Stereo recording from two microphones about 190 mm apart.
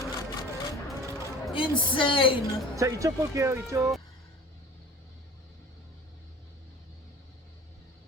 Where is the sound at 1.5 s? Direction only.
25° left (ahead or behind).